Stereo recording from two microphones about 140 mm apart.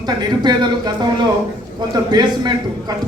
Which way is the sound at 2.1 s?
30° right (ahead or behind).